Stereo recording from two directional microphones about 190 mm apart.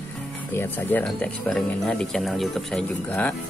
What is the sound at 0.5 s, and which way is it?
Speech, 10° left (ahead or behind).